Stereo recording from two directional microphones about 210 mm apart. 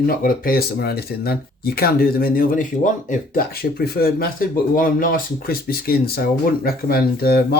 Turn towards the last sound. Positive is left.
turn(degrees=50)  # may be behind; listen again after turning